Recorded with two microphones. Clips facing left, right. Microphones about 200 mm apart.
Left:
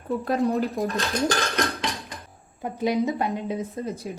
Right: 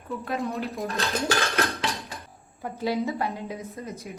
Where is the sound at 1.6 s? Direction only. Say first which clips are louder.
Left 1 dB; 5° right (ahead or behind).